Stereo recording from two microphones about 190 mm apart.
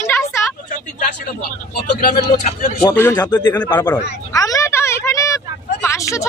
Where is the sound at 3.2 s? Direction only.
20° left (ahead or behind).